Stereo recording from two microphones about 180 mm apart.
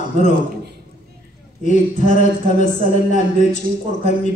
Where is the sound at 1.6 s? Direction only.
45° left (ahead or behind).